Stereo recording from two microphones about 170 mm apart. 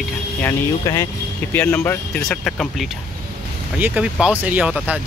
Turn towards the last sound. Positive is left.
turn(degrees=-10)  # may be behind; listen again after turning